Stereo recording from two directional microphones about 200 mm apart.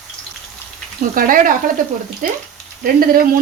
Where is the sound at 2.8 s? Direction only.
45° right (ahead or behind).